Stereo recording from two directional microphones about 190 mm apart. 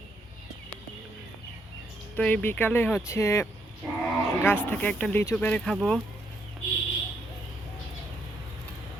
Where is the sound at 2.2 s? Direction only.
5° left (ahead or behind).